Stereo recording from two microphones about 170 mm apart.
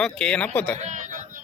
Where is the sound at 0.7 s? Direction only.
45° right (ahead or behind).